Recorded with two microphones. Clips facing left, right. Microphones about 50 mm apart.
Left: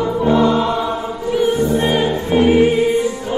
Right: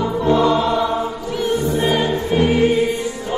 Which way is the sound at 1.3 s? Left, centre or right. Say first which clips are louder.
Left 5 dB; centre.